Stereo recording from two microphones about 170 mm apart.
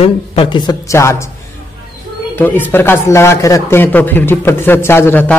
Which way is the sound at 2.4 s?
10° left (ahead or behind).